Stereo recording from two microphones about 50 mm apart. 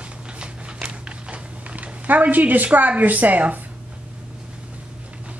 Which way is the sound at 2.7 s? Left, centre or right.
Right.